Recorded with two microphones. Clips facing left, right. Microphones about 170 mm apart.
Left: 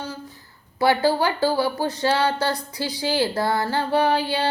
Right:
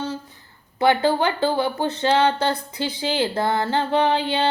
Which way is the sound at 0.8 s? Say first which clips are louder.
Right 1 dB; 20° right (ahead or behind).